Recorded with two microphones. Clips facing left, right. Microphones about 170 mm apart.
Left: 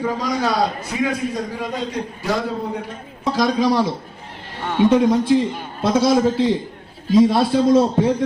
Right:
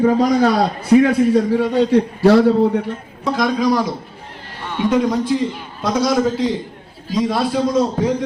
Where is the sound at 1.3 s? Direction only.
70° right (ahead or behind).